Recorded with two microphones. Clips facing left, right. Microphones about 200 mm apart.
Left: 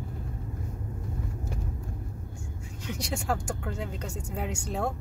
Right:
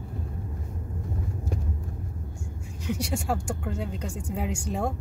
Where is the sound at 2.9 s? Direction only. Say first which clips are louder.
Right 3 dB; 10° right (ahead or behind).